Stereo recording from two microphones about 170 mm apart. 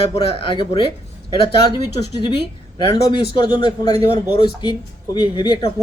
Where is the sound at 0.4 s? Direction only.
30° left (ahead or behind).